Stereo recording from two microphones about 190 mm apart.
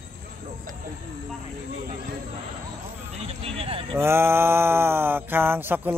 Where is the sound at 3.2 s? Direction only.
30° right (ahead or behind).